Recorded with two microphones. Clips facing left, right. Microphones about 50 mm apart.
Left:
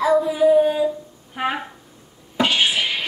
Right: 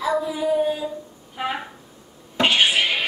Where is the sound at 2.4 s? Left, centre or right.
Right.